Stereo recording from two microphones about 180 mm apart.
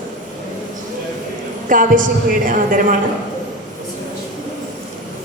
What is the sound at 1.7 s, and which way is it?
A man's voice, 50° right (ahead or behind).